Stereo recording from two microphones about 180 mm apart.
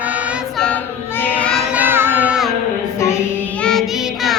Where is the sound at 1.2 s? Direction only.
10° left (ahead or behind).